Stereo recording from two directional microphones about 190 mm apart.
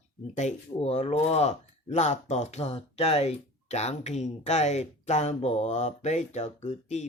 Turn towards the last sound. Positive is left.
turn(degrees=35)  # may be behind; listen again after turning